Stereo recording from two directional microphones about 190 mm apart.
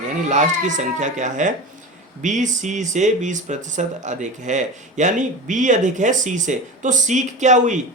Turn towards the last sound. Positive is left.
turn(degrees=-40)  # may be behind; listen again after turning